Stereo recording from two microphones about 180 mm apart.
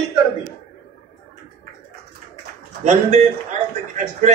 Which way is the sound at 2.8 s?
40° right (ahead or behind).